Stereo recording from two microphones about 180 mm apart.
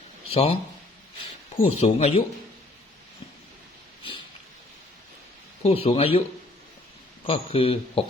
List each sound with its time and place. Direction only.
0.3 s speech: 35° left (ahead or behind)
1.6 s speech: 35° left (ahead or behind)
5.6 s speech: 35° left (ahead or behind)
7.3 s speech: 35° left (ahead or behind)